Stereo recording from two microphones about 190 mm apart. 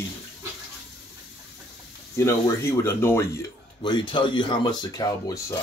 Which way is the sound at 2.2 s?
15° left (ahead or behind).